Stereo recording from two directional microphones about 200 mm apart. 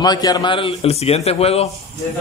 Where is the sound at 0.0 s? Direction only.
20° left (ahead or behind).